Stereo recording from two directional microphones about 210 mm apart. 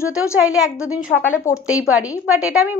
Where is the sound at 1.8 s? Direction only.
5° right (ahead or behind).